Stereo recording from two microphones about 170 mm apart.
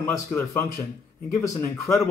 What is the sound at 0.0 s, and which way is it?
Speech, 10° left (ahead or behind).